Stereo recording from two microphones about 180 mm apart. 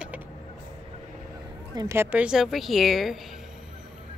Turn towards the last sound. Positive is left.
turn(degrees=0)  # may be behind; listen again after turning